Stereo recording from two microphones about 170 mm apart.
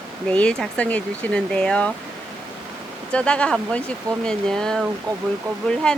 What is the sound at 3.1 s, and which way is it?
Speech, 5° left (ahead or behind).